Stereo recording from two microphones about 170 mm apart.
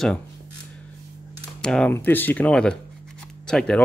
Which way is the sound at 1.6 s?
5° left (ahead or behind).